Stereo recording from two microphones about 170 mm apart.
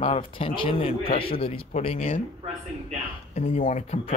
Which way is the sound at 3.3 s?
45° left (ahead or behind).